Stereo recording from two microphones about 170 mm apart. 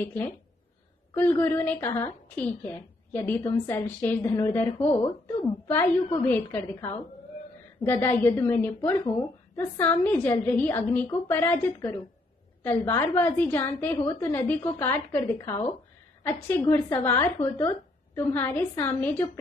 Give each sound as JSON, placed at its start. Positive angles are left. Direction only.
{"t": 0.0, "sound": "a woman's voice", "side_deg": 10}